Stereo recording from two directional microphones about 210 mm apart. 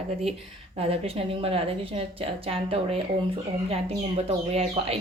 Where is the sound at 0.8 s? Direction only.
30° right (ahead or behind).